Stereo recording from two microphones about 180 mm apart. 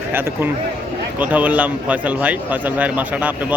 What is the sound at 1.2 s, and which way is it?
A man's voice, 10° right (ahead or behind).